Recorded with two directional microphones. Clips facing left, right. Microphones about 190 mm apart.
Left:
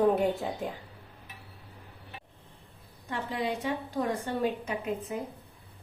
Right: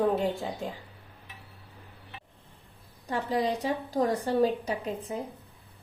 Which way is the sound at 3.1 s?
35° right (ahead or behind).